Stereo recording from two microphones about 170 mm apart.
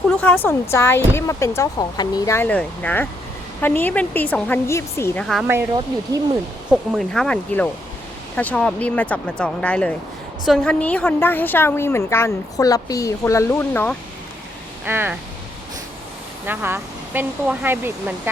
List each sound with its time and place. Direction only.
0.2 s a woman's voice: 10° left (ahead or behind)
5.2 s speech: centre (ahead or behind)
6.7 s a woman's voice: centre (ahead or behind)
14.8 s speech: 10° right (ahead or behind)
16.5 s speech: 10° right (ahead or behind)